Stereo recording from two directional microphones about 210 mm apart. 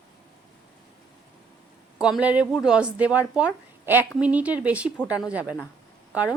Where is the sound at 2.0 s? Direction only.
5° right (ahead or behind).